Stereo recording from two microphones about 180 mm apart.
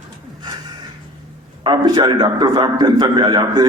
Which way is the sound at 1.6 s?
25° right (ahead or behind).